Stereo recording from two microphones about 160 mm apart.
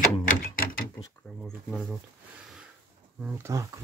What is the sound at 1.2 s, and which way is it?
Speech, 5° left (ahead or behind).